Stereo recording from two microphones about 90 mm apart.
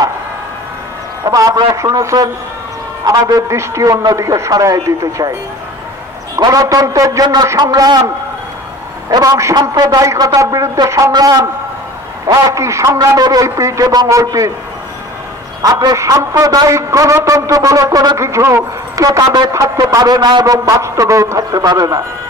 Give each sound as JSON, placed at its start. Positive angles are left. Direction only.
{"t": 1.2, "sound": "a man's voice", "side_deg": -40}
{"t": 3.1, "sound": "a man's voice", "side_deg": -40}
{"t": 6.5, "sound": "speech", "side_deg": -40}
{"t": 9.1, "sound": "a man's voice", "side_deg": -40}
{"t": 15.6, "sound": "a man's voice", "side_deg": -40}